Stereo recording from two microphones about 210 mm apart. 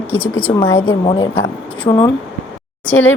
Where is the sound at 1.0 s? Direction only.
20° left (ahead or behind).